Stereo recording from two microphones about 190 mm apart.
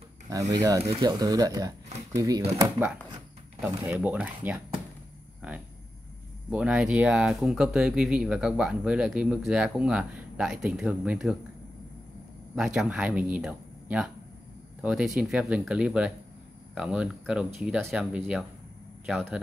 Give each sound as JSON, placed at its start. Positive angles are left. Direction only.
{"t": 0.3, "sound": "speech", "side_deg": -20}
{"t": 3.9, "sound": "speech", "side_deg": -10}
{"t": 6.5, "sound": "speech", "side_deg": -5}
{"t": 12.5, "sound": "speech", "side_deg": -5}